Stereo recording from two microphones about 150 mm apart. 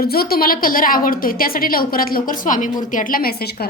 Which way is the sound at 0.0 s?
90° left.